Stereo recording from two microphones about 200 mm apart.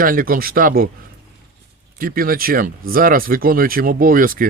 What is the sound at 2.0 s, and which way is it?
Speech, 45° right (ahead or behind).